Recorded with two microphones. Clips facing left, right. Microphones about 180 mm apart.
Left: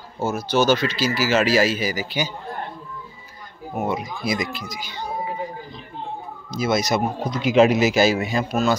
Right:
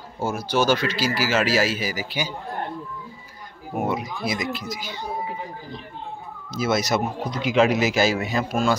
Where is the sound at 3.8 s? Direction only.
5° right (ahead or behind).